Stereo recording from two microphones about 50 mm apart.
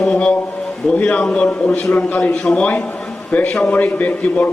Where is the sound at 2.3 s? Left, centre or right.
Centre.